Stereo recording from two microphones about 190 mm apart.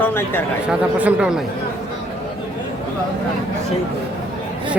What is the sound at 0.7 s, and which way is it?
Speech, 5° right (ahead or behind).